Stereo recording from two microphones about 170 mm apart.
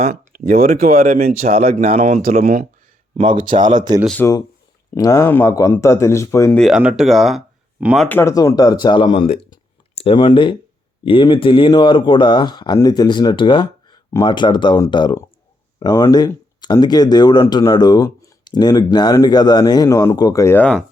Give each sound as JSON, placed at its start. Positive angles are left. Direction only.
{"t": 0.0, "sound": "speech", "side_deg": -60}
{"t": 1.9, "sound": "speech", "side_deg": -40}
{"t": 4.0, "sound": "speech", "side_deg": 5}
{"t": 4.9, "sound": "speech", "side_deg": 20}
{"t": 6.5, "sound": "speech", "side_deg": 0}
{"t": 8.0, "sound": "speech", "side_deg": 15}